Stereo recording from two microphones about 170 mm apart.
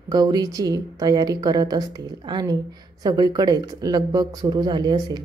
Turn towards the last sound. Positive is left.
turn(degrees=-25)  # may be behind; listen again after turning